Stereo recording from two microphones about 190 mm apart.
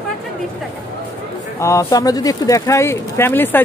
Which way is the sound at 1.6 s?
15° left (ahead or behind).